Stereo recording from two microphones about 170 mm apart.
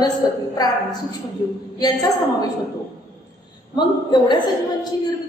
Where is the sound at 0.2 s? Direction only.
20° left (ahead or behind).